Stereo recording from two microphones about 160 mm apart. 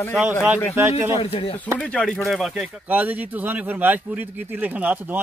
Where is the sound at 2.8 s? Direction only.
10° right (ahead or behind).